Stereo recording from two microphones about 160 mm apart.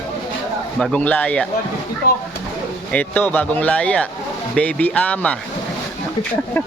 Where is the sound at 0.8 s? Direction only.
5° left (ahead or behind).